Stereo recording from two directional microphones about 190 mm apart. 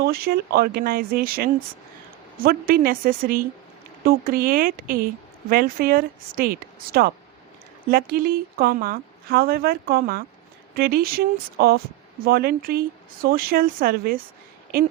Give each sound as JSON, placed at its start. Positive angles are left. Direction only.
{"t": 0.0, "sound": "a woman's voice", "side_deg": -55}